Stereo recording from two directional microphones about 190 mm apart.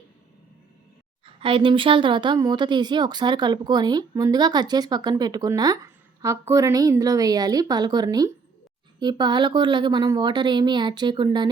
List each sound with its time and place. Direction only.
1.2 s a woman's voice: 30° right (ahead or behind)